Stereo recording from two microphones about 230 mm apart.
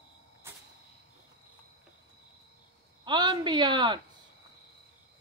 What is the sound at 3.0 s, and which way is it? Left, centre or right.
Speech, centre.